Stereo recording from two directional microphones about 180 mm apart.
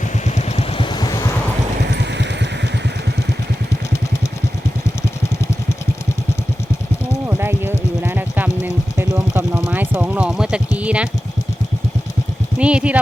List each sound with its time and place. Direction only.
0.3 s vehicle: 40° left (ahead or behind); by 1.3 s 20° left (ahead or behind)
2.0 s vehicle: 75° right (ahead or behind)
7.3 s a sound: 10° right (ahead or behind)
12.5 s speech: 5° right (ahead or behind)